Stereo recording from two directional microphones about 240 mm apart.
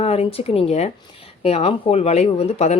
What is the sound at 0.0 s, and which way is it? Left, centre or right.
Speech, left.